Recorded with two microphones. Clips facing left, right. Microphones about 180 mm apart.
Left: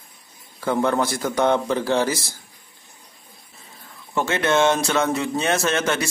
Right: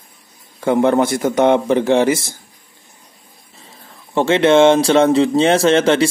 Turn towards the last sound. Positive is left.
turn(degrees=-30)  # may be behind; listen again after turning